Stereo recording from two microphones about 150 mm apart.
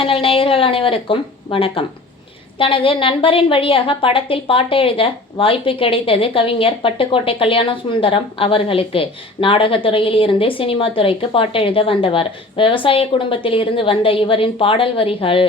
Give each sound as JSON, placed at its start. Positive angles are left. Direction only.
{"t": 0.0, "sound": "a woman's voice", "side_deg": 40}